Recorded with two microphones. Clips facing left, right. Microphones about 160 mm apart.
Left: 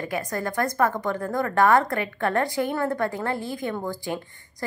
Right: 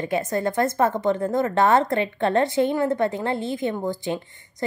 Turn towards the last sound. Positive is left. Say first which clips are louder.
# right 4 dB
turn(degrees=-20)  # may be behind; listen again after turning